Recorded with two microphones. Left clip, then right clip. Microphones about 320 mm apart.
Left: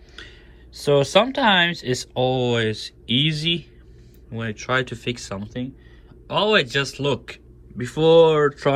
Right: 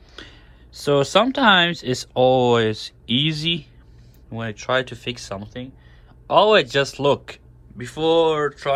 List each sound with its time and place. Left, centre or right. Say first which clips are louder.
0.2 s speech: even; centre